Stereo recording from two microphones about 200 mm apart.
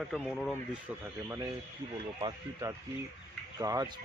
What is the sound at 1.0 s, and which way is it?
Speech, 15° right (ahead or behind).